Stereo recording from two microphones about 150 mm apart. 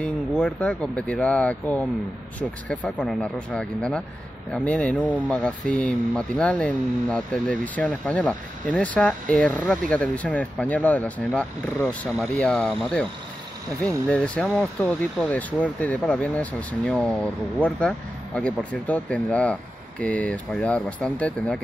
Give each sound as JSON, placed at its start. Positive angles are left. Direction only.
{"t": 0.0, "sound": "speech", "side_deg": 10}